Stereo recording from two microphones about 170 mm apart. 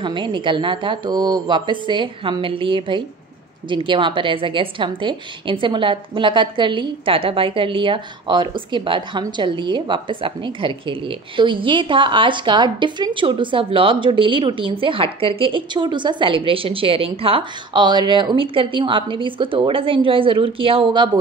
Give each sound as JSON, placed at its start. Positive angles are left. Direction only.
{"t": 0.0, "sound": "a woman's voice", "side_deg": -30}